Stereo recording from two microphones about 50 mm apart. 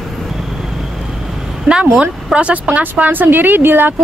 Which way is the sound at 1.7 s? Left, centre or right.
Right.